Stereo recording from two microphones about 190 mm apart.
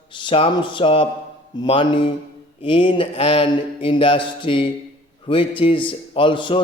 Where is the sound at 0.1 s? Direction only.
25° left (ahead or behind).